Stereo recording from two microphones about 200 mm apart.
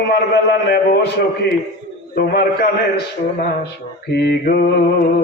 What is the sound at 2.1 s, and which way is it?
Speech, 50° left (ahead or behind).